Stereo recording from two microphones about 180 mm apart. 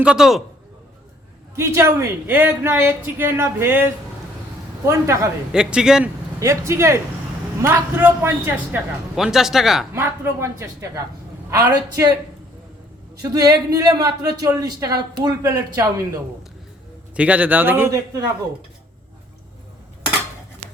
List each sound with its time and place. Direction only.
0.0 s a man's voice: 5° right (ahead or behind)
1.5 s speech: 15° right (ahead or behind)
5.5 s a man's voice: 5° right (ahead or behind)
6.4 s a man's voice: 15° right (ahead or behind)
9.9 s speech: 15° right (ahead or behind)
13.3 s speech: 20° right (ahead or behind)
17.2 s speech: 10° right (ahead or behind)